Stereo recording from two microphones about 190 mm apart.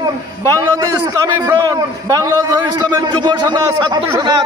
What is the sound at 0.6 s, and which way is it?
A man's voice, 20° right (ahead or behind).